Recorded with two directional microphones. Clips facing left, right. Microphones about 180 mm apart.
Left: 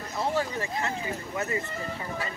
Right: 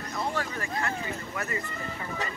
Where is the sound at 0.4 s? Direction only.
25° left (ahead or behind).